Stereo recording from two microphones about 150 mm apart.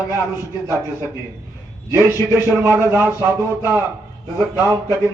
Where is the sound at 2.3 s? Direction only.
15° right (ahead or behind).